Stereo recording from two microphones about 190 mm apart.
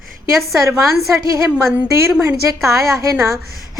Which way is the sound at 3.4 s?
50° right (ahead or behind).